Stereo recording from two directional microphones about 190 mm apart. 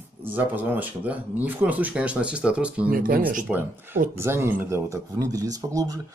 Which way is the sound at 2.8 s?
50° right (ahead or behind).